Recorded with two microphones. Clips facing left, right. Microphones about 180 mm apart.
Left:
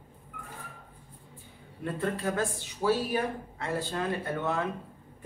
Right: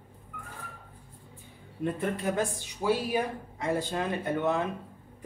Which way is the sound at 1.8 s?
20° right (ahead or behind).